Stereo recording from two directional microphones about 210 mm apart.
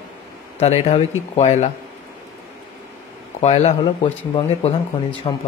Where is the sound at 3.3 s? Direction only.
30° left (ahead or behind).